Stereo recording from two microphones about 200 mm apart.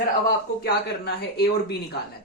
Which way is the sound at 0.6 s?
55° left (ahead or behind).